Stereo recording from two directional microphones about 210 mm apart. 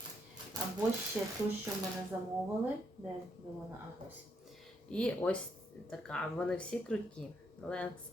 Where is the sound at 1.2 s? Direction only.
Centre (ahead or behind).